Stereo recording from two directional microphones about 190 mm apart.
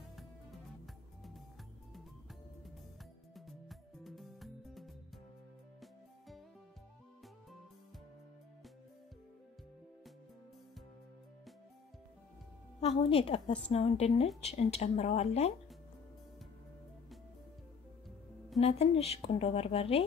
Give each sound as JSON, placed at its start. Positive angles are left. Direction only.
{"t": 3.3, "sound": "music", "side_deg": 0}
{"t": 12.8, "sound": "a woman's voice", "side_deg": 30}
{"t": 18.6, "sound": "a woman's voice", "side_deg": 35}